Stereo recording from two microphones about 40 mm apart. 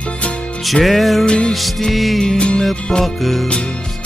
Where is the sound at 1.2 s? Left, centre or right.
Left.